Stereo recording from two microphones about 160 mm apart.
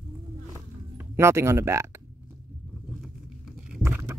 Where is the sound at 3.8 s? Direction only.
15° right (ahead or behind).